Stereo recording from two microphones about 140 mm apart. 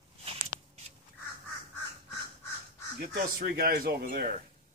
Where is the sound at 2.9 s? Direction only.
90° right.